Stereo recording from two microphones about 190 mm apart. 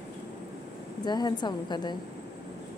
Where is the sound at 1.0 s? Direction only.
20° left (ahead or behind).